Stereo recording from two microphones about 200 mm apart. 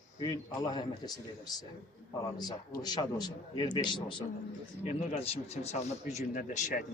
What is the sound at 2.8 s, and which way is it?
A man's voice, 20° left (ahead or behind).